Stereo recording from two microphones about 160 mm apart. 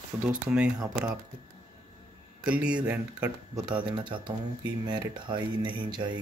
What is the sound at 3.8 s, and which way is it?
Speech, 30° right (ahead or behind).